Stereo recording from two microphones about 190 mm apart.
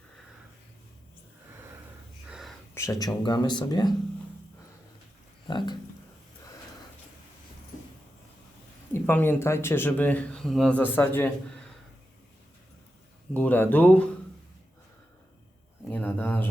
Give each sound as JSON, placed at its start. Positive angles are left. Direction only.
{"t": 2.7, "sound": "speech", "side_deg": 15}
{"t": 5.5, "sound": "speech", "side_deg": 25}
{"t": 8.9, "sound": "speech", "side_deg": 10}
{"t": 13.3, "sound": "speech", "side_deg": 10}
{"t": 15.9, "sound": "a sound", "side_deg": 10}